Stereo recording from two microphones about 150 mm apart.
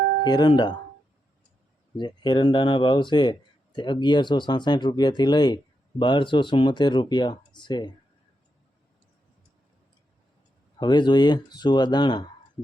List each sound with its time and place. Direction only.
0.3 s speech: 30° left (ahead or behind)
2.0 s speech: 30° left (ahead or behind)
10.8 s speech: 30° left (ahead or behind)